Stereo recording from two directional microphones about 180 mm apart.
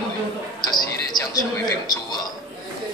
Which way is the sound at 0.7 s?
20° left (ahead or behind).